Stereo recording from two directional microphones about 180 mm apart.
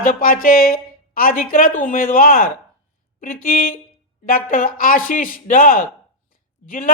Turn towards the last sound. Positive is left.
turn(degrees=50)  # may be behind; listen again after turning